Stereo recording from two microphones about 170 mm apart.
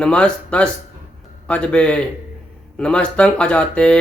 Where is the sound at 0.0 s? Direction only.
5° left (ahead or behind).